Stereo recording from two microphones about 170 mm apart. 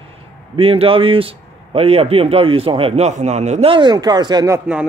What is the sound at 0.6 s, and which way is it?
A man's voice, 35° right (ahead or behind).